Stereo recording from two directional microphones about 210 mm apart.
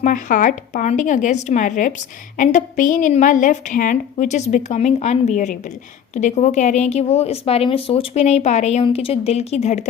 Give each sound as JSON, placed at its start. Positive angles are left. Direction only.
{"t": 0.0, "sound": "a woman's voice", "side_deg": 40}